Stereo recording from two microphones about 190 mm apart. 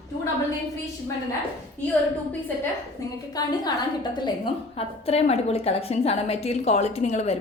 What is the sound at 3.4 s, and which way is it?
A woman's voice, 20° left (ahead or behind).